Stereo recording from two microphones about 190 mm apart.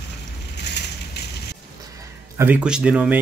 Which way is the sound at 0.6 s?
60° left (ahead or behind).